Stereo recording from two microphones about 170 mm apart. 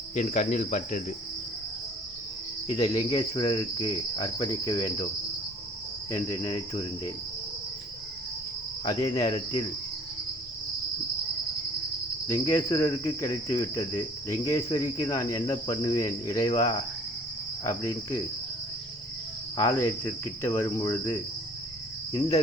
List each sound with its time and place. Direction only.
0.1 s cricket: 45° left (ahead or behind)
2.6 s cricket: 25° left (ahead or behind)
6.1 s cricket: 20° left (ahead or behind)
8.8 s cricket: 20° left (ahead or behind)
12.3 s cricket: 15° left (ahead or behind)
19.5 s cricket: 15° left (ahead or behind)